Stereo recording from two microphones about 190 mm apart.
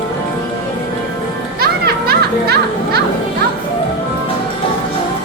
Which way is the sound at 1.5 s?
55° right (ahead or behind).